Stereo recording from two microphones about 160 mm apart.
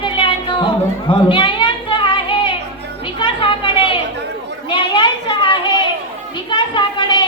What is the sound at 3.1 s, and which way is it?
Chatter, 30° left (ahead or behind).